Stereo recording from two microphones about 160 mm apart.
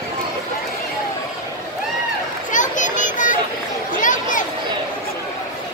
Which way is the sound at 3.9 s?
55° left (ahead or behind).